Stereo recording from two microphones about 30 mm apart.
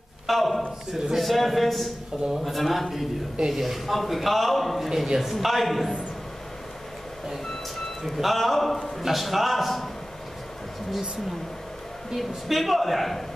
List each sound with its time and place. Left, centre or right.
0.3 s a man's voice: centre
3.3 s a man's voice: centre
3.6 s a man's voice: centre
4.8 s a man's voice: centre
5.3 s a man's voice: centre
8.2 s a man's voice: centre
12.2 s a man's voice: centre